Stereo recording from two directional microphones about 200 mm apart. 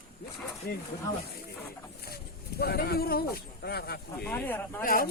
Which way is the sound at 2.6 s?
50° left (ahead or behind).